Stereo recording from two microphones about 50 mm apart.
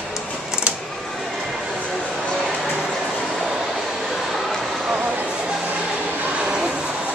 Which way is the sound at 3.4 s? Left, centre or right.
Centre.